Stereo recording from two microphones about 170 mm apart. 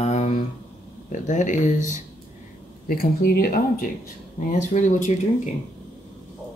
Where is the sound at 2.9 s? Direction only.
60° left (ahead or behind).